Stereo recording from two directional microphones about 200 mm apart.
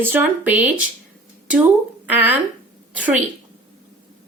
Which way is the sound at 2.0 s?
10° right (ahead or behind).